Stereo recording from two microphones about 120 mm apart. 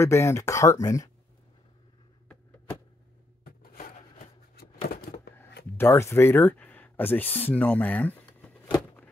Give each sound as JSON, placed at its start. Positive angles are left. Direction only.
{"t": 0.0, "sound": "speech", "side_deg": 25}
{"t": 5.8, "sound": "speech", "side_deg": 25}